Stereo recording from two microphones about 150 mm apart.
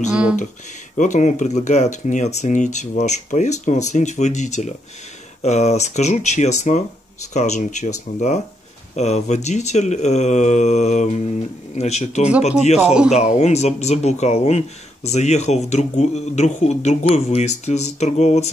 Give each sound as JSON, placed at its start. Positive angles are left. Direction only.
{"t": 0.1, "sound": "speech", "side_deg": -5}
{"t": 0.9, "sound": "speech", "side_deg": 55}